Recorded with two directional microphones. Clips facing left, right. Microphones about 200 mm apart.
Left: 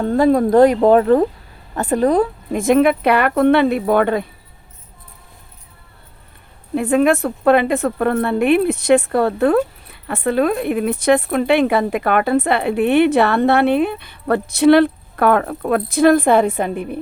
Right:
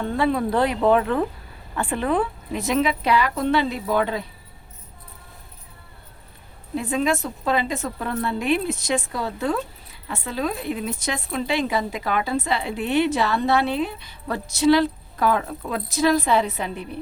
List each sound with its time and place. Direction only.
0.0 s a woman's voice: 40° left (ahead or behind)
6.7 s a woman's voice: 60° left (ahead or behind)